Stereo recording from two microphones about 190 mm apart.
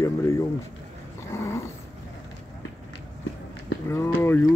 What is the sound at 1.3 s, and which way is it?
Dog, 15° left (ahead or behind).